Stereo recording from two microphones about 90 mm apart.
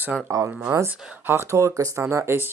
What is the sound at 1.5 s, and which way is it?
Speech, 35° right (ahead or behind).